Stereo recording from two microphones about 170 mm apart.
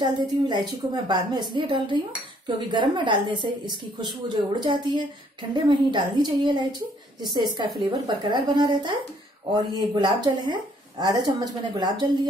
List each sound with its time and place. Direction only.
0.0 s a woman's voice: 25° right (ahead or behind)